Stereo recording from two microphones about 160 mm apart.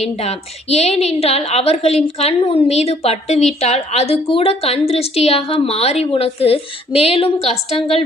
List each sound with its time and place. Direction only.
0.0 s a woman's voice: 40° left (ahead or behind)